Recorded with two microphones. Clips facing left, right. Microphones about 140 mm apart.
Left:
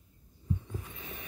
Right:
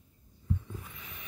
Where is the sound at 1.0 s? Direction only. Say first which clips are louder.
Left 5 dB; 35° left (ahead or behind).